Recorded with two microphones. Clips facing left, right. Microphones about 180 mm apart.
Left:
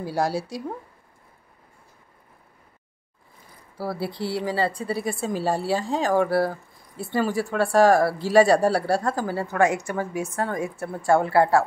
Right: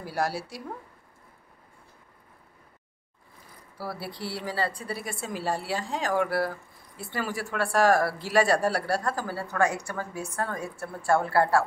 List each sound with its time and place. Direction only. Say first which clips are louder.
0.0 s speech: left 5 dB; 20° left (ahead or behind)
3.7 s a woman's voice: left 7 dB; 25° left (ahead or behind)